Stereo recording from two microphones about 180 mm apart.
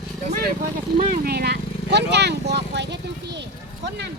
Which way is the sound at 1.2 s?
60° right (ahead or behind).